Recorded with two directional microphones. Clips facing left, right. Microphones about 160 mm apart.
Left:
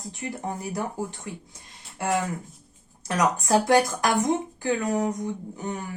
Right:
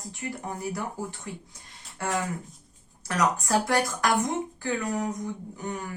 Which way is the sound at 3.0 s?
20° left (ahead or behind).